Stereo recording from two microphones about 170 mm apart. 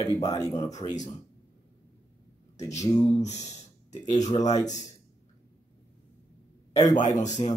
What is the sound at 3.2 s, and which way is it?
Speech, 40° left (ahead or behind).